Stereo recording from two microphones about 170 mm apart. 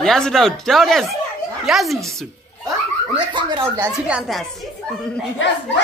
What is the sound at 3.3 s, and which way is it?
Speech, 25° right (ahead or behind).